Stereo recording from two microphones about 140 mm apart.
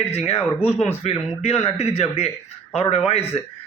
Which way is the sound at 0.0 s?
50° left (ahead or behind).